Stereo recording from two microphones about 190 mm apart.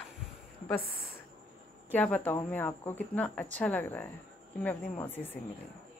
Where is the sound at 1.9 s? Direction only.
10° left (ahead or behind).